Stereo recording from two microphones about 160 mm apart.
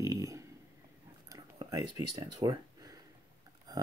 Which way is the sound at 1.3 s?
20° right (ahead or behind).